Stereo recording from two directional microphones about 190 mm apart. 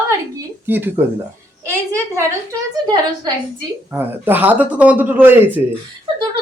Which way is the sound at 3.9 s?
10° right (ahead or behind).